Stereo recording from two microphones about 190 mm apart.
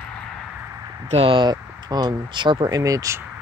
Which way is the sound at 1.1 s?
30° right (ahead or behind).